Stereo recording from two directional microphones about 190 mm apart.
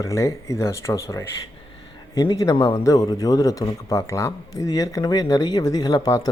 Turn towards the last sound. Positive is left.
turn(degrees=20)  # may be behind; listen again after turning